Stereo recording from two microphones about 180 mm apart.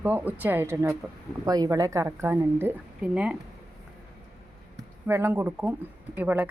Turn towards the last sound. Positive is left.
turn(degrees=-10)  # may be behind; listen again after turning